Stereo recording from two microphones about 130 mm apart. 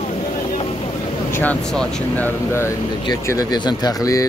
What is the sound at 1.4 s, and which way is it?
Speech, 10° left (ahead or behind).